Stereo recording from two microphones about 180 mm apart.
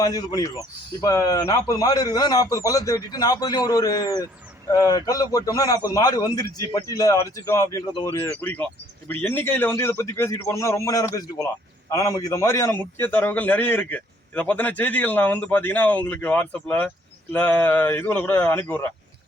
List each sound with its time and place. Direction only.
0.0 s a man's voice: 20° left (ahead or behind)